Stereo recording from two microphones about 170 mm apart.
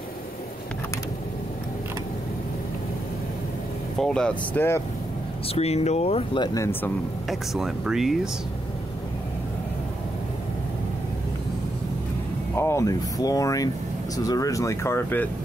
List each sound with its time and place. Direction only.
4.0 s speech: 5° left (ahead or behind)
5.5 s speech: 40° left (ahead or behind); by 6.9 s 15° left (ahead or behind)
7.2 s speech: centre (ahead or behind)
12.5 s speech: 15° left (ahead or behind)